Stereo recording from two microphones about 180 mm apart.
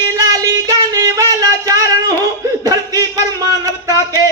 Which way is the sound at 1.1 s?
20° right (ahead or behind).